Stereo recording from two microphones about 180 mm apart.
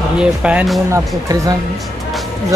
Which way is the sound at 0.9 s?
20° right (ahead or behind).